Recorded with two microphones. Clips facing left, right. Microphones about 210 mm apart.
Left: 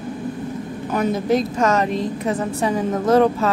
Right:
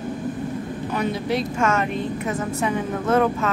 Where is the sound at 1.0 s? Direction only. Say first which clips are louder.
Left 6 dB; 45° left (ahead or behind).